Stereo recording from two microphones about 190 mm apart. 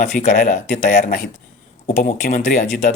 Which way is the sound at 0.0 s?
40° left (ahead or behind).